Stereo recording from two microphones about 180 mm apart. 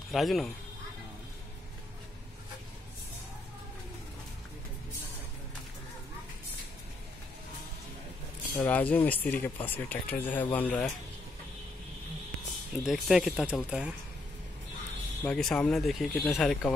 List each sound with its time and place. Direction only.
0.1 s speech: centre (ahead or behind)
8.5 s speech: 10° left (ahead or behind)
12.7 s speech: centre (ahead or behind)
15.2 s speech: 5° left (ahead or behind)